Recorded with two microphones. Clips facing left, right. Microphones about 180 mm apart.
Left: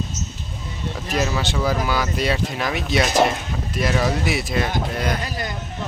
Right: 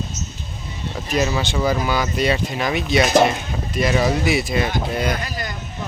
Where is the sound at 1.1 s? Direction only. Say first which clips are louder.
Right 2 dB; centre (ahead or behind).